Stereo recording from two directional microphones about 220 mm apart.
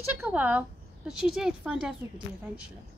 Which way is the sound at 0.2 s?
5° right (ahead or behind).